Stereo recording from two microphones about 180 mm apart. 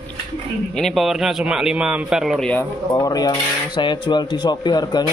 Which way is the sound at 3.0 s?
20° left (ahead or behind).